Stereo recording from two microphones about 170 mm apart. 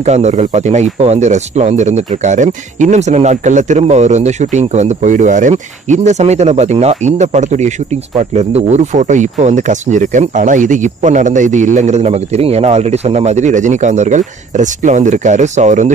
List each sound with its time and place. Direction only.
0.0 s speech: 40° right (ahead or behind)